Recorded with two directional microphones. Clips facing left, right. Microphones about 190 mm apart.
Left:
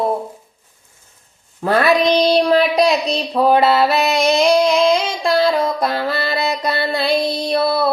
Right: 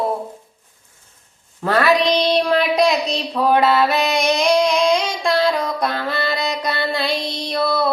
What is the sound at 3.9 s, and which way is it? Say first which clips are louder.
Music: left 3 dB; 5° left (ahead or behind).